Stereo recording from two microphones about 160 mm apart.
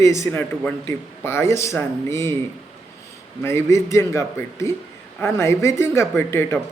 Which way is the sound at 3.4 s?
15° left (ahead or behind).